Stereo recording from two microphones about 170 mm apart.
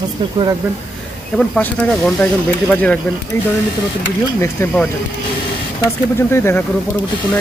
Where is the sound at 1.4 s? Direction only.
5° left (ahead or behind).